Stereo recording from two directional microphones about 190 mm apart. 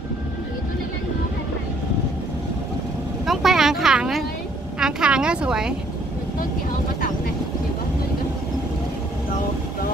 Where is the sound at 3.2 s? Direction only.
Centre (ahead or behind).